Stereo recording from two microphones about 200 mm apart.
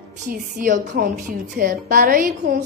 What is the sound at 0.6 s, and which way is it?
A woman's voice, 40° right (ahead or behind).